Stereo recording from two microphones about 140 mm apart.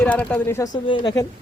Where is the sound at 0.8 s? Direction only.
35° left (ahead or behind).